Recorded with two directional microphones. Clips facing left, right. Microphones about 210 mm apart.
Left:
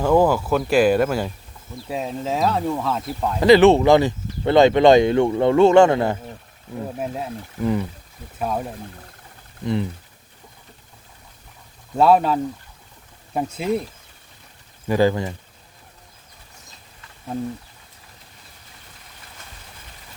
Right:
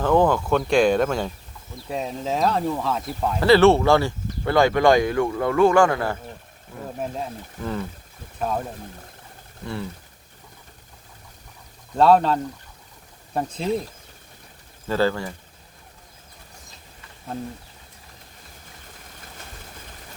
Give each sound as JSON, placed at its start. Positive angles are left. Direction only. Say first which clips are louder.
{"t": 0.0, "sound": "speech", "louder": "left 2 dB", "side_deg": 10}
{"t": 3.4, "sound": "speech", "louder": "left 3 dB", "side_deg": 15}
{"t": 7.0, "sound": "speech", "louder": "left 2 dB", "side_deg": 10}
{"t": 11.9, "sound": "speech", "louder": "left 1 dB", "side_deg": 10}
{"t": 14.8, "sound": "speech", "louder": "left 4 dB", "side_deg": 15}